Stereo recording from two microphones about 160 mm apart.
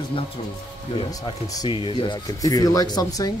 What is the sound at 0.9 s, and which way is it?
Speech, 25° left (ahead or behind).